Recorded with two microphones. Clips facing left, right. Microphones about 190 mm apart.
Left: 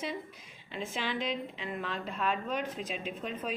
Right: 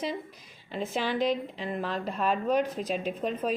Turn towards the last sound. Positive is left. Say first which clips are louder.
# right 7 dB
turn(degrees=-40)  # may be behind; listen again after turning